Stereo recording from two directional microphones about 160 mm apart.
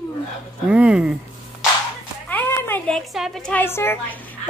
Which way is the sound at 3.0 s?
Centre (ahead or behind).